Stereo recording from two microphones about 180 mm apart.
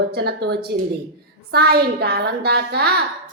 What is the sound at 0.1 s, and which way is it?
A woman's voice, 60° right (ahead or behind).